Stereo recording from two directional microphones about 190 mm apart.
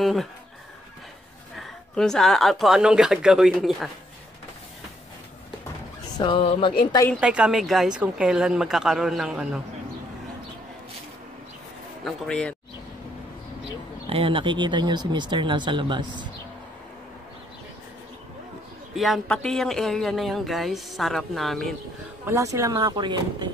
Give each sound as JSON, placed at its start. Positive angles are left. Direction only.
{"t": 0.0, "sound": "speech", "side_deg": 0}
{"t": 1.6, "sound": "speech", "side_deg": 5}
{"t": 6.1, "sound": "speech", "side_deg": 25}
{"t": 7.2, "sound": "speech", "side_deg": -5}
{"t": 12.0, "sound": "speech", "side_deg": 5}
{"t": 14.0, "sound": "speech", "side_deg": -30}
{"t": 18.9, "sound": "speech", "side_deg": 0}
{"t": 22.2, "sound": "speech", "side_deg": -15}